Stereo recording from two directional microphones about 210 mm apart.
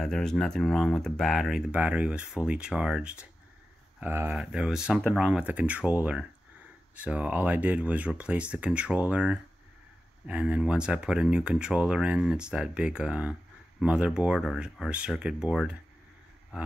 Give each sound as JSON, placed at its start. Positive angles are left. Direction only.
{"t": 0.0, "sound": "speech", "side_deg": 0}